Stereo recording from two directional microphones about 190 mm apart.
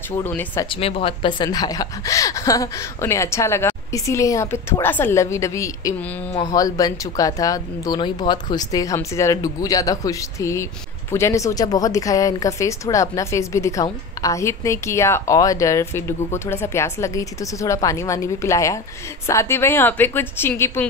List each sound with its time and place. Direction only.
0.1 s speech: 10° left (ahead or behind)
0.7 s speech: 30° left (ahead or behind); by 20.8 s 15° left (ahead or behind)